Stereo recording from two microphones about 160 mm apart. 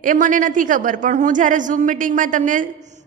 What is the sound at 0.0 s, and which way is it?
A woman's voice, 55° right (ahead or behind).